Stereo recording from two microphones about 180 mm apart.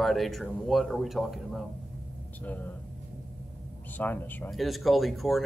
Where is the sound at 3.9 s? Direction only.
10° left (ahead or behind).